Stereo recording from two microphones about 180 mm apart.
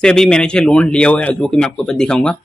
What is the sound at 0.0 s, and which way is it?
A man's voice, 5° left (ahead or behind).